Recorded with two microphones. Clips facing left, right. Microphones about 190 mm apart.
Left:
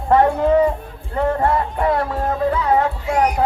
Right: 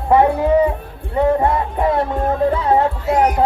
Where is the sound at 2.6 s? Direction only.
30° right (ahead or behind).